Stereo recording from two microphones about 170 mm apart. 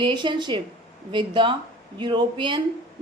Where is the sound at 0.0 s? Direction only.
25° right (ahead or behind).